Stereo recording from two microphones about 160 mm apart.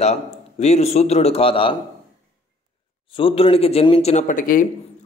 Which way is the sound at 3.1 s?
35° left (ahead or behind).